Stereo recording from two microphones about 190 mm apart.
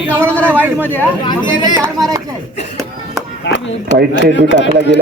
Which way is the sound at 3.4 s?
65° left (ahead or behind).